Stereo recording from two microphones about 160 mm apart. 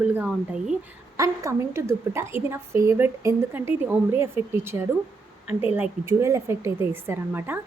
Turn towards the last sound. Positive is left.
turn(degrees=-15)  # may be behind; listen again after turning